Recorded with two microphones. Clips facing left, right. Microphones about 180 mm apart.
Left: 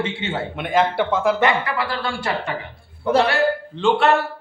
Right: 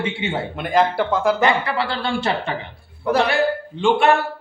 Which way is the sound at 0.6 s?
Centre (ahead or behind).